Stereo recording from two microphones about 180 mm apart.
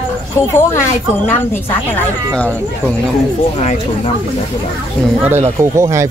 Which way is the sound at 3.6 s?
35° left (ahead or behind).